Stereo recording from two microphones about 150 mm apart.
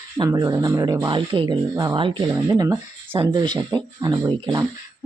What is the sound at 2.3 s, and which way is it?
Speech, 20° right (ahead or behind).